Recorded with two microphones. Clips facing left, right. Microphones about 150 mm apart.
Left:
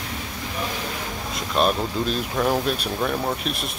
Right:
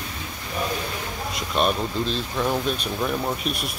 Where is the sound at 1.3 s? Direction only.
Centre (ahead or behind).